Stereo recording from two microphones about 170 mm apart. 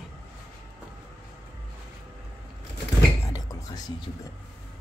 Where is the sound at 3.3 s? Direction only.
20° left (ahead or behind).